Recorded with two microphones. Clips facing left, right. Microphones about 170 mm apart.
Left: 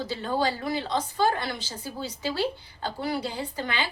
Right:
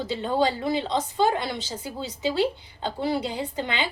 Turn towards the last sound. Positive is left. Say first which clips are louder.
# right 2 dB
turn(degrees=-20)  # may be behind; listen again after turning